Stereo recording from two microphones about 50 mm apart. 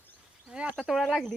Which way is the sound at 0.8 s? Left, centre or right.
Centre.